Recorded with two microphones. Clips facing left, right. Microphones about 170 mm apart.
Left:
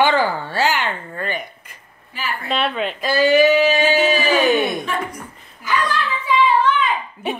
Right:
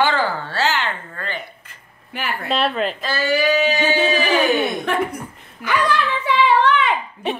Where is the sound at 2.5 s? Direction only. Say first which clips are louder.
Right 1 dB; centre (ahead or behind).